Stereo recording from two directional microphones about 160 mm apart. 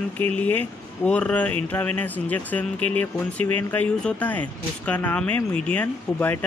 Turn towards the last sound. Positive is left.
turn(degrees=10)  # may be behind; listen again after turning